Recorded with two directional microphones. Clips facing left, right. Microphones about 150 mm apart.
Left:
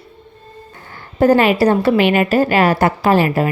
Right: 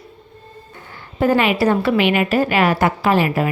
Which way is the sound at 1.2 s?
40° left (ahead or behind).